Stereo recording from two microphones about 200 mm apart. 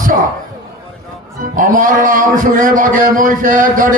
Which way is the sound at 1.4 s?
40° right (ahead or behind).